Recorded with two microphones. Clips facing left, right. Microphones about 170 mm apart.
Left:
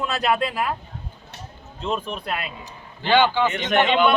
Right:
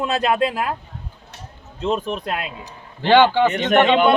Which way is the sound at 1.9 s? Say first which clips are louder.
Right 3 dB; 40° right (ahead or behind).